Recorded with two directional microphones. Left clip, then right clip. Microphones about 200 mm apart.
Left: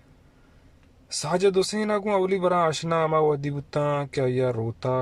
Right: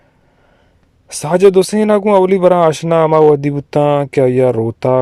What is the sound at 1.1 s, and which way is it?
Speech, 35° right (ahead or behind).